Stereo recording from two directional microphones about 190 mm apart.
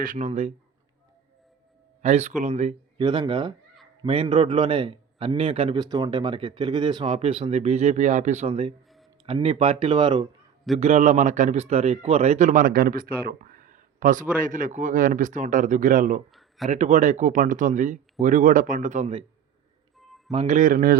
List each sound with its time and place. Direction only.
0.0 s speech: 40° right (ahead or behind)
2.0 s speech: 35° right (ahead or behind)
3.0 s a man's voice: 25° right (ahead or behind)
10.8 s speech: 35° right (ahead or behind)
20.3 s speech: 35° right (ahead or behind)